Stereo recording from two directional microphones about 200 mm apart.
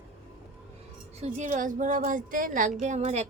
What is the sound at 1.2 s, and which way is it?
A woman's voice, 40° right (ahead or behind).